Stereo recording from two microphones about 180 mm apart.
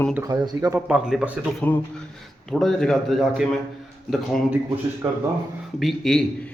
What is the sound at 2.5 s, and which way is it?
Speech, centre (ahead or behind).